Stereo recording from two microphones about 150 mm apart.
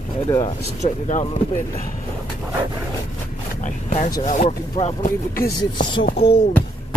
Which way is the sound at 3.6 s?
55° left (ahead or behind).